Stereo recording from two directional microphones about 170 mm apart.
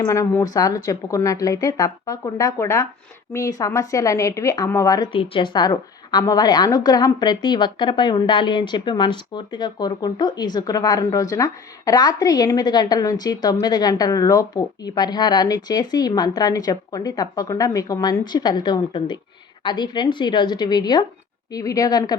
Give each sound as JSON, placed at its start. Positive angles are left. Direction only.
{"t": 0.0, "sound": "a woman's voice", "side_deg": 20}
{"t": 5.1, "sound": "a woman's voice", "side_deg": 30}